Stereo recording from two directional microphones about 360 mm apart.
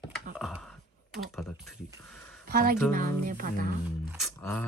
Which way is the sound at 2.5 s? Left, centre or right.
Right.